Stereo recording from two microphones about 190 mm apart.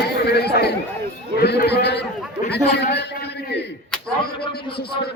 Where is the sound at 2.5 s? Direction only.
60° left (ahead or behind).